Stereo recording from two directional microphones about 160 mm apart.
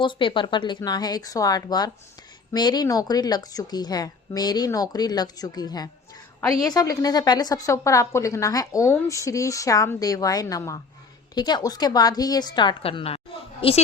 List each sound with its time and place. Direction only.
0.0 s a woman's voice: 30° left (ahead or behind)